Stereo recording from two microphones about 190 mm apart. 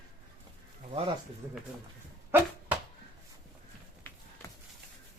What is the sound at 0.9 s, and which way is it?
Speech, 30° right (ahead or behind).